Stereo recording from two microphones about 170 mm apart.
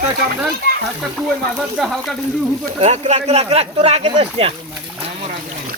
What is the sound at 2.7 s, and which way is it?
Speech, 40° right (ahead or behind).